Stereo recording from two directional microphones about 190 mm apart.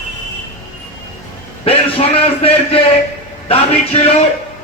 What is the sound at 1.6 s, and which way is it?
A man's voice, 30° left (ahead or behind).